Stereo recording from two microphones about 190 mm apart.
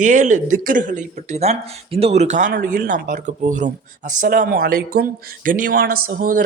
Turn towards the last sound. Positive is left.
turn(degrees=-45)  # may be behind; listen again after turning